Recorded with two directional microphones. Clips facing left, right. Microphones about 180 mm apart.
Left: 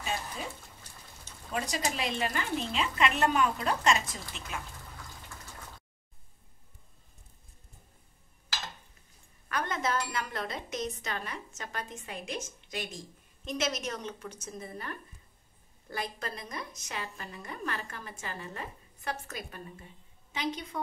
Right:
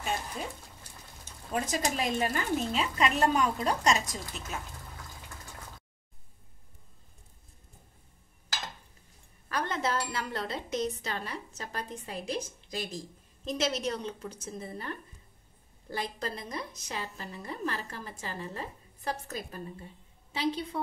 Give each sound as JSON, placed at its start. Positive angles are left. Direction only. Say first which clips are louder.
{"t": 1.5, "sound": "a woman's voice", "louder": "right 2 dB", "side_deg": -45}
{"t": 9.5, "sound": "speech", "louder": "right 1 dB", "side_deg": -30}